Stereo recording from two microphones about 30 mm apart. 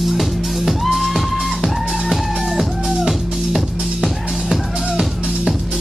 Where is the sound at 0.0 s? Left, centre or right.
Centre.